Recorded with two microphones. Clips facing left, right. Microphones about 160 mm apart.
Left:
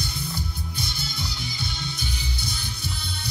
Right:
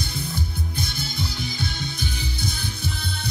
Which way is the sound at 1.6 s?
50° right (ahead or behind).